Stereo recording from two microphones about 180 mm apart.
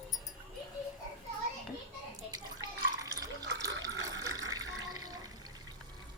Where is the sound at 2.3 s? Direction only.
20° right (ahead or behind).